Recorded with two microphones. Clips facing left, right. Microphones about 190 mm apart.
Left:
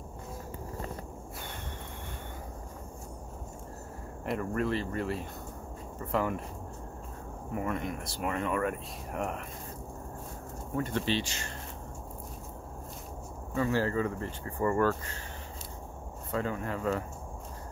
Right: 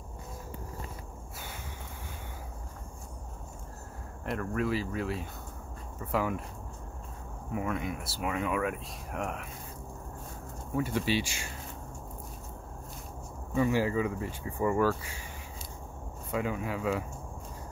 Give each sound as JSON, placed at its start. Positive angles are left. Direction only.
{"t": 4.3, "sound": "speech", "side_deg": 0}
{"t": 7.5, "sound": "speech", "side_deg": 0}
{"t": 10.8, "sound": "speech", "side_deg": -10}
{"t": 13.6, "sound": "speech", "side_deg": -15}
{"t": 16.3, "sound": "speech", "side_deg": -10}